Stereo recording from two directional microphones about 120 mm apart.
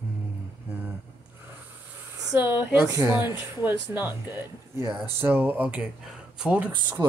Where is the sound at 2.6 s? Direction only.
20° right (ahead or behind).